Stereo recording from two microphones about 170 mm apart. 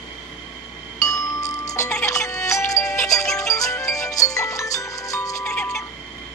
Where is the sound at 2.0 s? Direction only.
20° left (ahead or behind).